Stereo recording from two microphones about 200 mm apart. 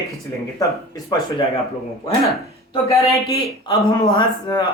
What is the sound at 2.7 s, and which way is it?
A man's voice, 15° left (ahead or behind).